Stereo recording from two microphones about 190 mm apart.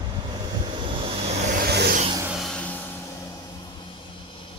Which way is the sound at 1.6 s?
55° right (ahead or behind).